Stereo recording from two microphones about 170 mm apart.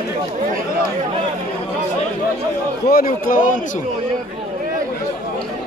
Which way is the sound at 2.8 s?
60° left (ahead or behind).